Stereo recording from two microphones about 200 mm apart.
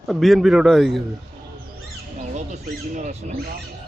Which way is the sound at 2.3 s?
35° right (ahead or behind).